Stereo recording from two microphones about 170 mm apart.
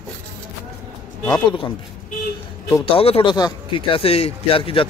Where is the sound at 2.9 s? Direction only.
35° left (ahead or behind).